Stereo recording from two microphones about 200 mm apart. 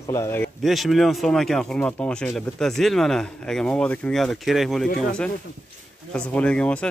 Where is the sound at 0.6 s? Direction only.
Centre (ahead or behind).